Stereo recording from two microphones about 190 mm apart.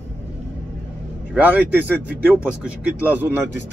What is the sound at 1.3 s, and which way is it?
Speech, 10° right (ahead or behind).